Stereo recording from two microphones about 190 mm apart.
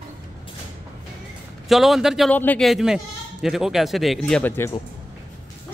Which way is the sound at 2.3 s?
10° left (ahead or behind).